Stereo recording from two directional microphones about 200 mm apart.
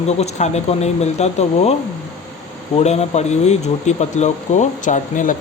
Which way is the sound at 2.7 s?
30° left (ahead or behind).